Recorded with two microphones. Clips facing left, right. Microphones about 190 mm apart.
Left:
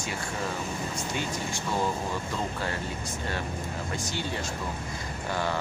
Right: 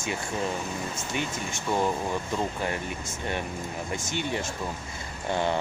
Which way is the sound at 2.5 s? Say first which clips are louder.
Right 2 dB; 20° right (ahead or behind).